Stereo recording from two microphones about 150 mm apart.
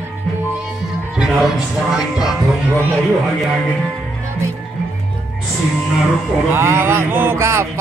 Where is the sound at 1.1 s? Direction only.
5° right (ahead or behind).